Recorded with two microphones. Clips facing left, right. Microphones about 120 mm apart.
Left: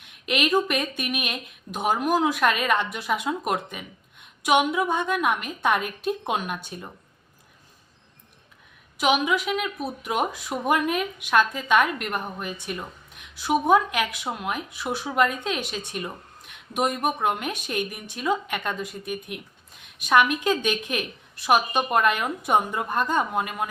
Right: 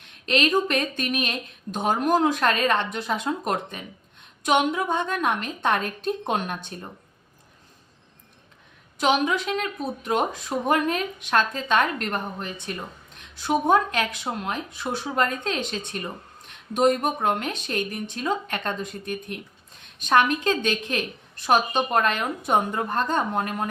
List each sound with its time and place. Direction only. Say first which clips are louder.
0.1 s a sound: right 2 dB; 10° left (ahead or behind)
0.7 s a woman's voice: right 2 dB; 10° left (ahead or behind)
9.0 s a woman's voice: even; 10° left (ahead or behind)